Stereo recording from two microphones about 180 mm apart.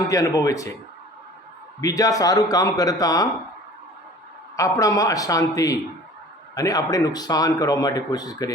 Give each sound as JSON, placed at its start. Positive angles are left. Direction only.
{"t": 0.1, "sound": "a man's voice", "side_deg": 20}
{"t": 1.8, "sound": "a man's voice", "side_deg": 20}
{"t": 4.5, "sound": "a man's voice", "side_deg": 20}